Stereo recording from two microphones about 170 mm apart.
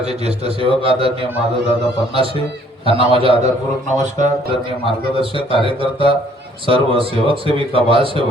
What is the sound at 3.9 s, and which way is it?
Speech, 45° right (ahead or behind).